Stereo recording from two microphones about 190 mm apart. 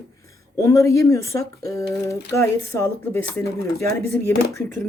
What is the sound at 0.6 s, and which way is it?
Speech, 15° left (ahead or behind).